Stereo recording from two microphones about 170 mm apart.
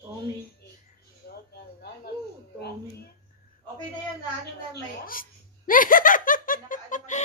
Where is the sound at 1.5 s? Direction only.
70° left (ahead or behind).